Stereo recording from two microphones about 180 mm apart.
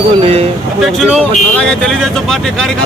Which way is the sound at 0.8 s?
Centre (ahead or behind).